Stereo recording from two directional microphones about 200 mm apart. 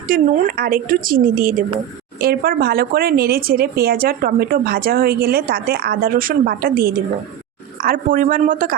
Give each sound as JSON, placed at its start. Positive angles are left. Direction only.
{"t": 0.1, "sound": "speech", "side_deg": -45}